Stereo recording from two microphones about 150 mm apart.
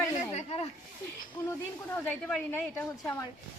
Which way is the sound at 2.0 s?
10° left (ahead or behind).